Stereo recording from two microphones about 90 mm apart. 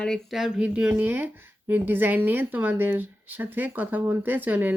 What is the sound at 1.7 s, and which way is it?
Speech, 20° right (ahead or behind).